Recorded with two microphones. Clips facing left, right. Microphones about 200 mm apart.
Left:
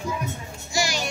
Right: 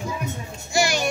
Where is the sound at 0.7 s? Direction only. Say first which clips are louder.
Right 5 dB; 55° right (ahead or behind).